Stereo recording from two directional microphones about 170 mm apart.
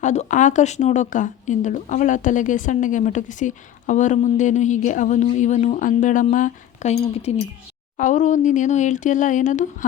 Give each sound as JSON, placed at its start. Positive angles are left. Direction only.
{"t": 0.0, "sound": "speech", "side_deg": 45}